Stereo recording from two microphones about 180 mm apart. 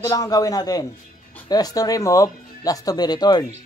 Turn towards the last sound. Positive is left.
turn(degrees=20)  # may be behind; listen again after turning